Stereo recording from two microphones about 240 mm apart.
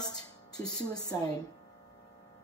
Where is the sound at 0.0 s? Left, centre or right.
Centre.